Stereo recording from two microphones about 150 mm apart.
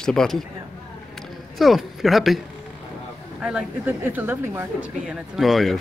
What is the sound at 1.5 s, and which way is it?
Speech, centre (ahead or behind).